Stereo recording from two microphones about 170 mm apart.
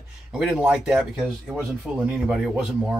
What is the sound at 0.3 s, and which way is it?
Speech, 5° right (ahead or behind).